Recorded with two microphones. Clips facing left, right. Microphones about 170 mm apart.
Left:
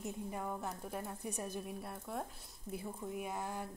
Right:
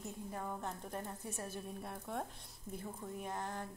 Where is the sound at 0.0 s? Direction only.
10° left (ahead or behind).